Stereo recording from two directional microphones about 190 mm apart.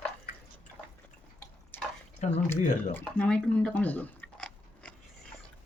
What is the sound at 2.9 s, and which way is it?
Chewing, 5° left (ahead or behind).